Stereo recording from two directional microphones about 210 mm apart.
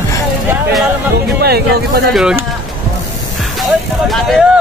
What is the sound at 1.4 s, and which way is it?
Speech, 50° right (ahead or behind).